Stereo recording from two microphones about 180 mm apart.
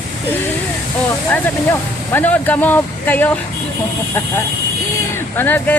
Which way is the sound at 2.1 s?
10° left (ahead or behind).